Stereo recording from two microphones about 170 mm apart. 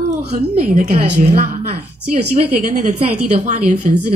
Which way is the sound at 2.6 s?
50° right (ahead or behind).